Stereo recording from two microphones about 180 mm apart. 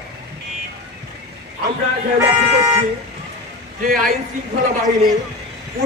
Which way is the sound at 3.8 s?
50° right (ahead or behind).